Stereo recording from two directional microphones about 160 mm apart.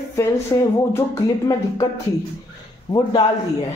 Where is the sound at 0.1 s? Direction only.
20° left (ahead or behind).